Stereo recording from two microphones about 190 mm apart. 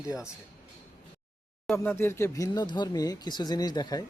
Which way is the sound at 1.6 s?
10° left (ahead or behind).